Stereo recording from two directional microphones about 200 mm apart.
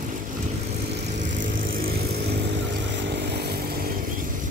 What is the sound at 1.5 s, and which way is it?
Vehicle, 45° right (ahead or behind).